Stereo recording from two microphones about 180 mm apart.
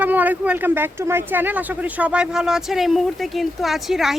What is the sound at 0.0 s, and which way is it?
Speech, 10° right (ahead or behind).